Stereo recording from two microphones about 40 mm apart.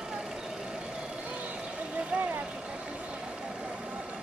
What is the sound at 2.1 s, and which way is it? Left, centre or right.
Vehicle, right.